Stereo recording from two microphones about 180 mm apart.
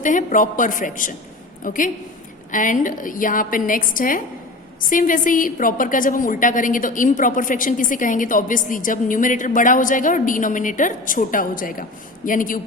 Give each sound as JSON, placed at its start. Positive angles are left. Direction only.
{"t": 0.0, "sound": "a woman's voice", "side_deg": 45}